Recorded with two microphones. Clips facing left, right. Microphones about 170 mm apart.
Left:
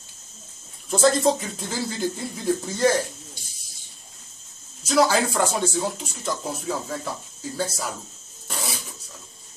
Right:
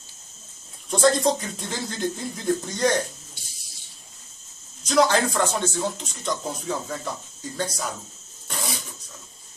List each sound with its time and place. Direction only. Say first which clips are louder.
0.8 s speech: left 1 dB; 5° left (ahead or behind)
4.8 s speech: even; 5° left (ahead or behind)
8.5 s zipper: even; centre (ahead or behind)